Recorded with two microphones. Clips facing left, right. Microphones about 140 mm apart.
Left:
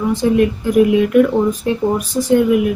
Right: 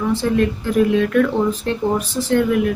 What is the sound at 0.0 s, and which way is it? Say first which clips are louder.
A woman's voice: left 3 dB; 15° left (ahead or behind).